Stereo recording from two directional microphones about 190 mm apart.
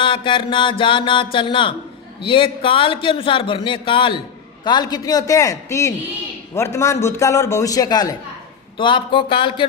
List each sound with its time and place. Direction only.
0.0 s a man's voice: 25° left (ahead or behind)